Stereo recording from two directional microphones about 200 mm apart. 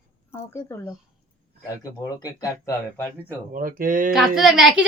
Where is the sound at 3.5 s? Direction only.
45° right (ahead or behind).